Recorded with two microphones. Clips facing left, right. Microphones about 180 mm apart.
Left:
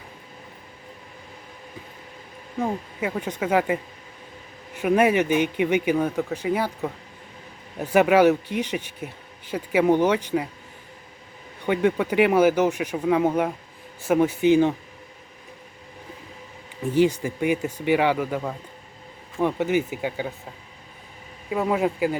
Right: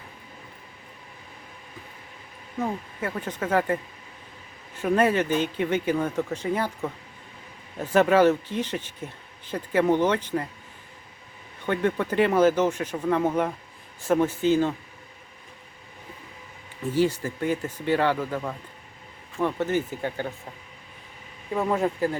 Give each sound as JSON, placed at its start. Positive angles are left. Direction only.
{"t": 2.6, "sound": "speech", "side_deg": 15}
{"t": 11.6, "sound": "speech", "side_deg": 10}
{"t": 16.8, "sound": "speech", "side_deg": 15}
{"t": 21.5, "sound": "speech", "side_deg": 5}